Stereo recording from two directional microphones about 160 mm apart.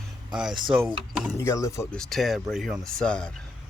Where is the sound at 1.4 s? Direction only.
20° left (ahead or behind).